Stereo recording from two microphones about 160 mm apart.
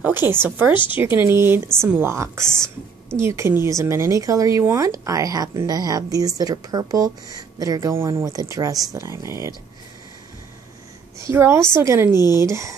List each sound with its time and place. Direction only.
0.0 s a woman's voice: 15° right (ahead or behind)
11.1 s a woman's voice: 15° right (ahead or behind)